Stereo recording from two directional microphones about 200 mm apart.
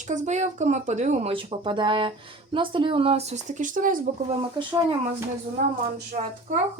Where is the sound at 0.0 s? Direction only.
35° right (ahead or behind).